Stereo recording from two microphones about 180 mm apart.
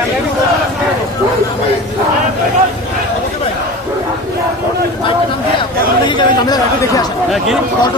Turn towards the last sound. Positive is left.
turn(degrees=20)  # may be behind; listen again after turning